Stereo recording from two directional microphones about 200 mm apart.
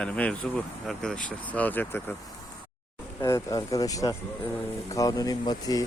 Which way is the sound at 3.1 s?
15° left (ahead or behind).